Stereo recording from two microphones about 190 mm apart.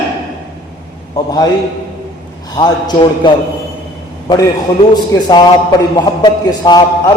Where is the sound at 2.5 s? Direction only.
20° left (ahead or behind).